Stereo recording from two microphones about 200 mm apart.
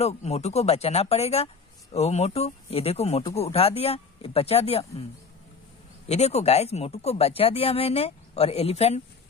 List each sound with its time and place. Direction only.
0.0 s speech: 30° left (ahead or behind)
6.0 s speech: 30° left (ahead or behind)